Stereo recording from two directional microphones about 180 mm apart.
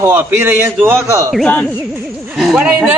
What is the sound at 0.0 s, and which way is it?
A man's voice, 10° right (ahead or behind).